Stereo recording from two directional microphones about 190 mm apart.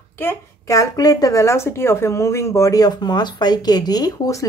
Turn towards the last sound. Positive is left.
turn(degrees=20)  # may be behind; listen again after turning